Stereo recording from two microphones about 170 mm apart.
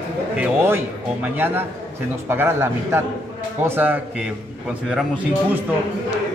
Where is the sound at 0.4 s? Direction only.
10° right (ahead or behind).